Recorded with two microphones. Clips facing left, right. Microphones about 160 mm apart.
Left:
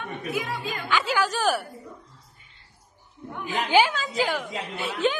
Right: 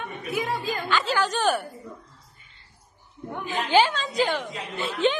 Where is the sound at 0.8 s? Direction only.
10° left (ahead or behind).